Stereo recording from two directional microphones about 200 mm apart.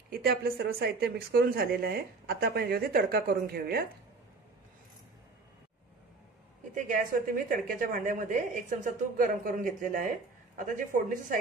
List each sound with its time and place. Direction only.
0.1 s speech: 50° right (ahead or behind)
6.7 s speech: 45° right (ahead or behind)